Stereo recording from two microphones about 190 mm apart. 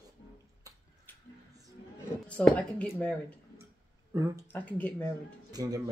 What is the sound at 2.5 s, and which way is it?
Speech, 5° left (ahead or behind).